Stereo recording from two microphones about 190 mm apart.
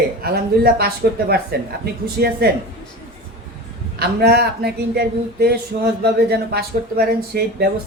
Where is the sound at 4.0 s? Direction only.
55° right (ahead or behind).